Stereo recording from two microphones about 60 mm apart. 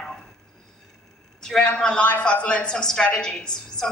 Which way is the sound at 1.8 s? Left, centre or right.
Centre.